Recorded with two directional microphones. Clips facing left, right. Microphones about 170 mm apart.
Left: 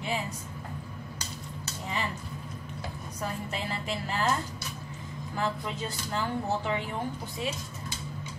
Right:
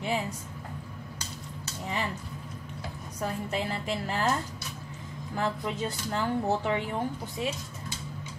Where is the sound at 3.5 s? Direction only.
50° right (ahead or behind).